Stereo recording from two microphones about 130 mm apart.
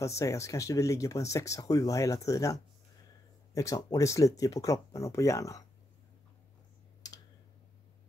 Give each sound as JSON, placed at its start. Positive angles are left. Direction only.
{"t": 0.0, "sound": "speech", "side_deg": 25}